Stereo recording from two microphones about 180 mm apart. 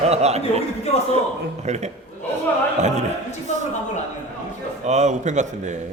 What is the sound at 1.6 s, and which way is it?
Speech, 40° right (ahead or behind).